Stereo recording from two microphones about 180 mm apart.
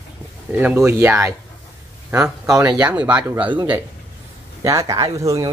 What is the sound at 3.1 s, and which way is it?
Speech, 10° right (ahead or behind).